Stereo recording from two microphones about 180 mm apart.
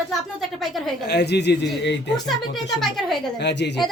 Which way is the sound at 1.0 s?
65° left (ahead or behind).